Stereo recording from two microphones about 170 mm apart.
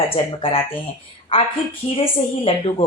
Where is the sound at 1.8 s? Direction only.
30° left (ahead or behind).